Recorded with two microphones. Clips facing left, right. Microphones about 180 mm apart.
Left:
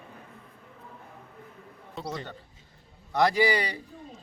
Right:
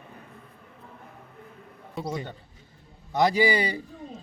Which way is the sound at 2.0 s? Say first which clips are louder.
Right 4 dB; 10° right (ahead or behind).